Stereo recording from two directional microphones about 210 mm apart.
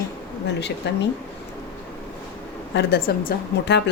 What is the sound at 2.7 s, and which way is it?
A woman's voice, 55° left (ahead or behind).